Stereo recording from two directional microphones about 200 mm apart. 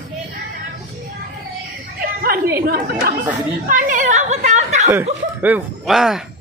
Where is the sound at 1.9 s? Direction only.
45° right (ahead or behind).